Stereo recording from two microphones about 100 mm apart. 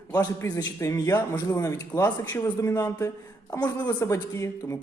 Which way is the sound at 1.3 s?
40° left (ahead or behind).